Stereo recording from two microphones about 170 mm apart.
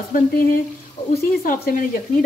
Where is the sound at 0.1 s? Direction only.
55° left (ahead or behind).